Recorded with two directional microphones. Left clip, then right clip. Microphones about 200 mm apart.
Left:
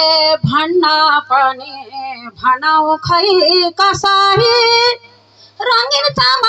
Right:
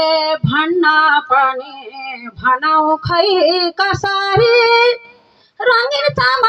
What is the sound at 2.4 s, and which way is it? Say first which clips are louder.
Child singing: left 1 dB; 40° left (ahead or behind).